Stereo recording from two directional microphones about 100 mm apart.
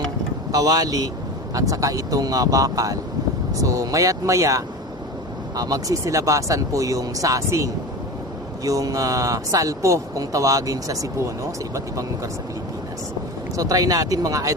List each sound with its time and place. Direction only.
0.5 s speech: 40° right (ahead or behind)
13.6 s speech: 35° right (ahead or behind)